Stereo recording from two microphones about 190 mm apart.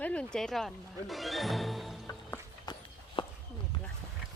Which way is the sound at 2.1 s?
20° left (ahead or behind).